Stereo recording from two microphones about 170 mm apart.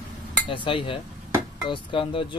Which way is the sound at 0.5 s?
30° left (ahead or behind).